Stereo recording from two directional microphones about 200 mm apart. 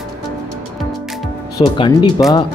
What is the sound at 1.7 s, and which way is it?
Speech, 25° left (ahead or behind).